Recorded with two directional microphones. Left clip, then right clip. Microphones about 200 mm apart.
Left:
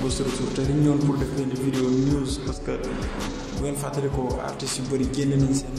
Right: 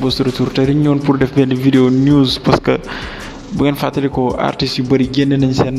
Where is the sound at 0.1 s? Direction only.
35° right (ahead or behind).